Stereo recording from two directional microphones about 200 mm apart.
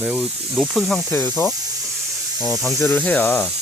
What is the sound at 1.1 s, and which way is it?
Speech, 10° left (ahead or behind).